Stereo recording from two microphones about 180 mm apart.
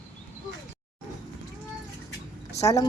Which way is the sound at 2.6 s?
20° left (ahead or behind).